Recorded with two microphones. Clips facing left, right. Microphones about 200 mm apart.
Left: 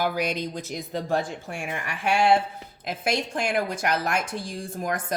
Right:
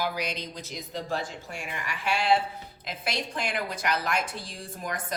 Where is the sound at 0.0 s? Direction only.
50° left (ahead or behind).